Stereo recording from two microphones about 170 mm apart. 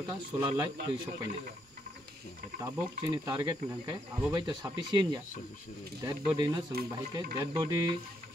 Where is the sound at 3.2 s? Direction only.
20° right (ahead or behind).